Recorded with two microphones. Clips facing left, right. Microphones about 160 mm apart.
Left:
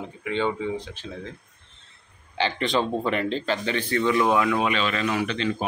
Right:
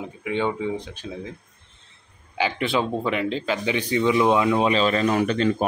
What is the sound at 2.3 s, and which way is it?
Speech, 10° right (ahead or behind).